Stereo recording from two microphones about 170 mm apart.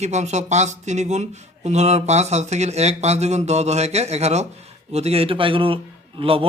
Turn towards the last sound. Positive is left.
turn(degrees=-35)  # may be behind; listen again after turning